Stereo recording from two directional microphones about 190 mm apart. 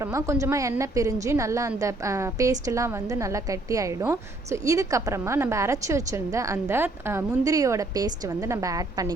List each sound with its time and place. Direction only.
0.0 s a woman's voice: 15° right (ahead or behind)